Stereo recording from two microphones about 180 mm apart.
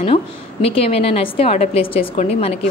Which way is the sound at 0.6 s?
35° left (ahead or behind).